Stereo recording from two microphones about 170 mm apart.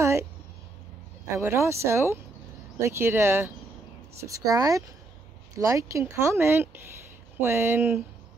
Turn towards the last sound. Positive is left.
turn(degrees=-15)  # may be behind; listen again after turning